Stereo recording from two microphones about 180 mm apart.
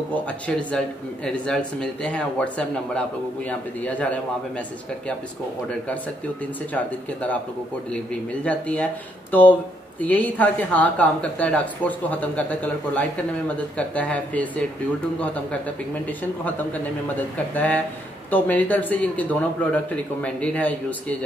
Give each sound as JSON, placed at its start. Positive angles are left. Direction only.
{"t": 0.1, "sound": "a woman's voice", "side_deg": 5}
{"t": 6.7, "sound": "a woman's voice", "side_deg": 10}